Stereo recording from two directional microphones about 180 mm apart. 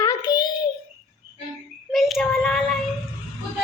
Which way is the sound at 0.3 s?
20° left (ahead or behind).